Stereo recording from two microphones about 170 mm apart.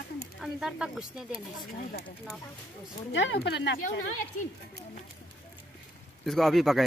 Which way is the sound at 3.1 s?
90° left.